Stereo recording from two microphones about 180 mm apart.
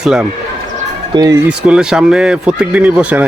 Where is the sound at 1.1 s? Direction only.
20° right (ahead or behind).